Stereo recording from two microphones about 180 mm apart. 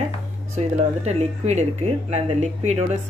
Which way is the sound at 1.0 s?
40° right (ahead or behind).